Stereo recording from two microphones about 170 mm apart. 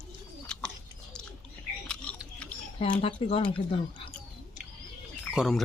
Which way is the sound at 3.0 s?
35° left (ahead or behind).